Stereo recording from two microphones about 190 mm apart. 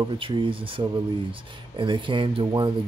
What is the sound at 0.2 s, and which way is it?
Speech, 25° right (ahead or behind).